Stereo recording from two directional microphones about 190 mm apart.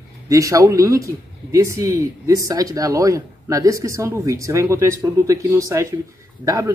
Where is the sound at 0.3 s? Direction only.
15° right (ahead or behind).